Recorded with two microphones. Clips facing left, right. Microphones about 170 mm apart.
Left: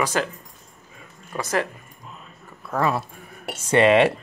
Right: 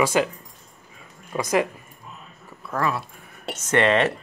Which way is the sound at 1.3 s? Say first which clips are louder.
Right 3 dB; 10° right (ahead or behind).